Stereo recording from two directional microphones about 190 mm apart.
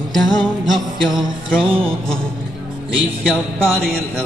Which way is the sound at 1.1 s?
25° right (ahead or behind).